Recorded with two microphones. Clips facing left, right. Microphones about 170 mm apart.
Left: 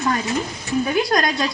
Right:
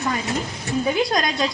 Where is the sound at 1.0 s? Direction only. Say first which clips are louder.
Left 1 dB; 20° right (ahead or behind).